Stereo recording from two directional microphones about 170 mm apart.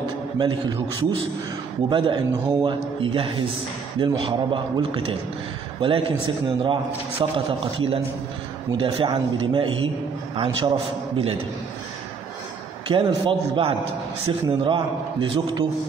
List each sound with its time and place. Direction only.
0.4 s a man's voice: 25° right (ahead or behind)
12.9 s a man's voice: 30° right (ahead or behind)